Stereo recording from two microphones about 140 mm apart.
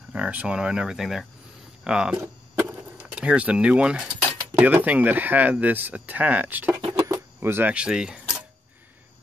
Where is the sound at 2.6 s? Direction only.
10° right (ahead or behind).